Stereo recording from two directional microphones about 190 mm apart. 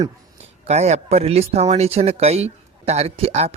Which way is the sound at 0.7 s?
35° right (ahead or behind).